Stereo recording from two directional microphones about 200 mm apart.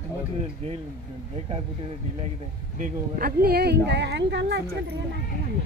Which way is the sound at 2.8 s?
45° right (ahead or behind).